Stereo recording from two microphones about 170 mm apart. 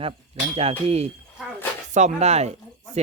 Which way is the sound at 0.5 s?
35° right (ahead or behind).